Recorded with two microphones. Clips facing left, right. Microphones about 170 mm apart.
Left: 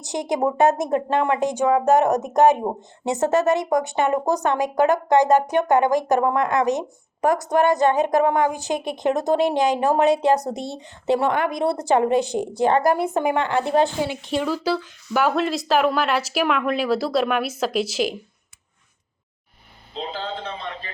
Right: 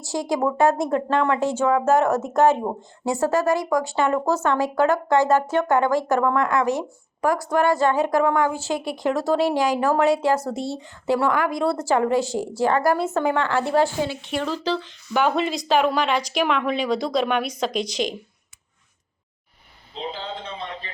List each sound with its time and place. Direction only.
0.0 s speech: 20° left (ahead or behind); by 18.2 s 5° left (ahead or behind)